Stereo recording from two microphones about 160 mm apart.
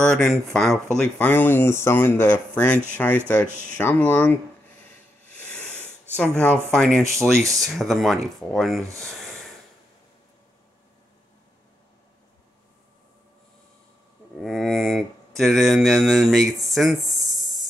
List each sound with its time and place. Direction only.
0.0 s speech: 5° left (ahead or behind)
5.4 s a sound: 5° left (ahead or behind)
6.1 s speech: 10° left (ahead or behind)
7.3 s speech: 20° right (ahead or behind)
7.6 s speech: centre (ahead or behind)
14.4 s a sound: centre (ahead or behind)